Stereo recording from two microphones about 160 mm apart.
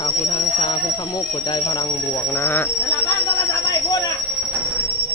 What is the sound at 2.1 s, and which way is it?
Speech, 15° left (ahead or behind).